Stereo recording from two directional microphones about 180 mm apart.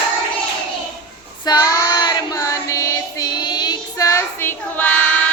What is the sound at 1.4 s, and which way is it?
Child singing, 20° left (ahead or behind).